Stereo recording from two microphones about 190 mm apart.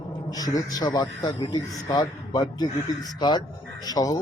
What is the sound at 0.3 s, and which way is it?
Speech, 20° left (ahead or behind).